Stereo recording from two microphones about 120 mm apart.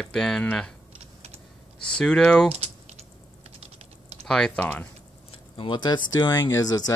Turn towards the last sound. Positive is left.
turn(degrees=30)  # may be behind; listen again after turning